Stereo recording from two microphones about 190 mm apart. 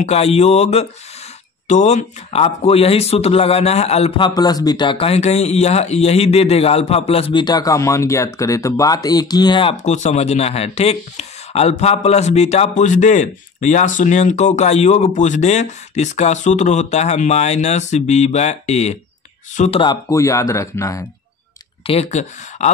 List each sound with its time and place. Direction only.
0.0 s speech: 35° left (ahead or behind)
4.3 s speech: 20° left (ahead or behind); by 19.8 s 40° left (ahead or behind)
19.8 s speech: 20° left (ahead or behind)
21.8 s speech: 35° left (ahead or behind)